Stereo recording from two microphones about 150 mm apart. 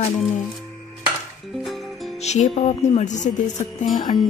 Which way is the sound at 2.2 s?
50° left (ahead or behind).